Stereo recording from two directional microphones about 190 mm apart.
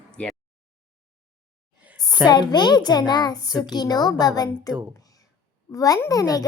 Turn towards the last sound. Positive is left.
turn(degrees=20)  # may be behind; listen again after turning